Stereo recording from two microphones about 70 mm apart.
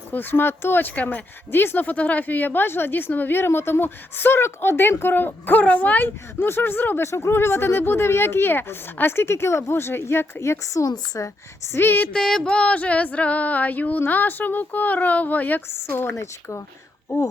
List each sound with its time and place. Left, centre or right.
0.1 s a woman's voice: left
10.9 s speech: left
11.7 s a woman's voice: left
12.1 s a sound: centre; by 16.1 s left
16.1 s speech: left